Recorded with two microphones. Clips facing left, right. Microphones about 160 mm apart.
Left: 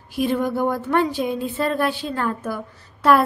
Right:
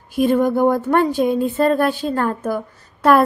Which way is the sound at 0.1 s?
50° right (ahead or behind).